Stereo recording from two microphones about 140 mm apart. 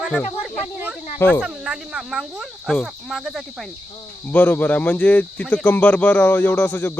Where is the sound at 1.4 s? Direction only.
5° right (ahead or behind).